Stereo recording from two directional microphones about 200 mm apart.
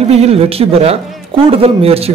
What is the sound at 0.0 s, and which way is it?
Speech, 30° right (ahead or behind).